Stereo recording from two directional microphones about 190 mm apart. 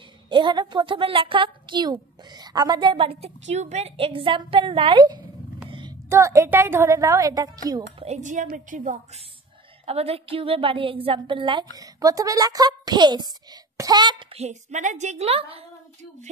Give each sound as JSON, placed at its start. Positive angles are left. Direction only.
{"t": 0.3, "sound": "a woman's voice", "side_deg": -25}
{"t": 5.7, "sound": "a sound", "side_deg": -25}
{"t": 6.0, "sound": "a woman's voice", "side_deg": -15}
{"t": 8.0, "sound": "a woman's voice", "side_deg": -40}
{"t": 14.4, "sound": "a woman's voice", "side_deg": -40}